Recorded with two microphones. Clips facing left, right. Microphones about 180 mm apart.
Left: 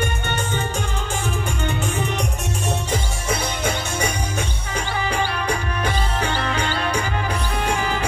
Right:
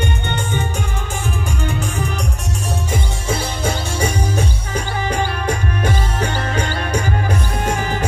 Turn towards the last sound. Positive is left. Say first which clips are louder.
# right 2 dB
turn(degrees=-40)  # may be behind; listen again after turning